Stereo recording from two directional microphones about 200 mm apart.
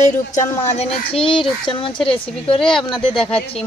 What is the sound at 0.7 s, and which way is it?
A child's voice, 30° left (ahead or behind).